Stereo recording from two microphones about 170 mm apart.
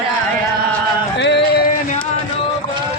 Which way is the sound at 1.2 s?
85° left.